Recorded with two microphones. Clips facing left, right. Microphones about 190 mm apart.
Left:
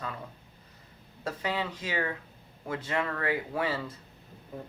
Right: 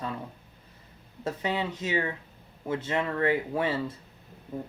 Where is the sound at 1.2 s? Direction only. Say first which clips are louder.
Right 2 dB; 25° right (ahead or behind).